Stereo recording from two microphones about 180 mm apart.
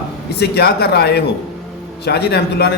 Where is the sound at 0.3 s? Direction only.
65° left (ahead or behind).